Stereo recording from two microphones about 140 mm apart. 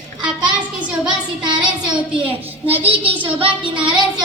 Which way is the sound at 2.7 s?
45° right (ahead or behind).